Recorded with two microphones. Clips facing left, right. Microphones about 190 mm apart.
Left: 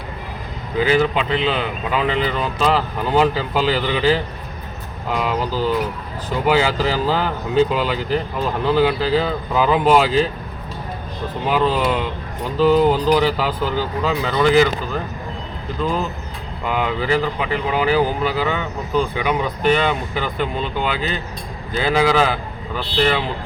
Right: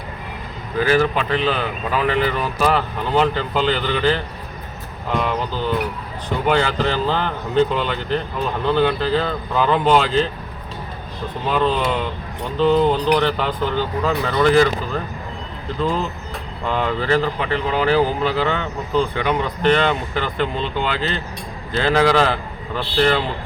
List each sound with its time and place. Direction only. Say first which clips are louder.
0.8 s speech: even; 15° left (ahead or behind)
2.7 s speech: left 1 dB; 5° left (ahead or behind)
11.5 s speech: left 1 dB; 5° left (ahead or behind)
16.6 s speech: even; 10° left (ahead or behind)